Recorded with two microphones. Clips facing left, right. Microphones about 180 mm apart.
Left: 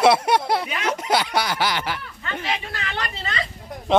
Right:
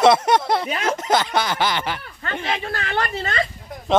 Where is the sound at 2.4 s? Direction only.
45° right (ahead or behind).